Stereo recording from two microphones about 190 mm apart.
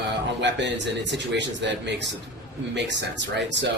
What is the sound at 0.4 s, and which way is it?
A man's voice, 70° right (ahead or behind).